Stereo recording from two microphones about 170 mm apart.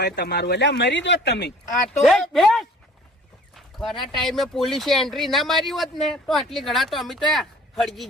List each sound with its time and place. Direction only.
0.0 s speech: 75° left (ahead or behind)
1.9 s speech: centre (ahead or behind)